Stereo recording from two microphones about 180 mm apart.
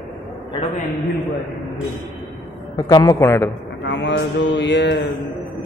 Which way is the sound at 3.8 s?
85° left.